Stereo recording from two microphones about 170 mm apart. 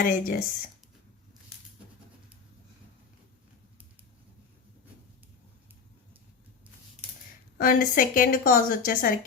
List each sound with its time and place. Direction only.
0.0 s speech: 55° left (ahead or behind)
7.6 s a woman's voice: 55° left (ahead or behind)